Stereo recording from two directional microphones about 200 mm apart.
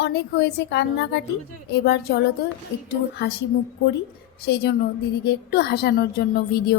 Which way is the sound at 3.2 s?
60° left (ahead or behind).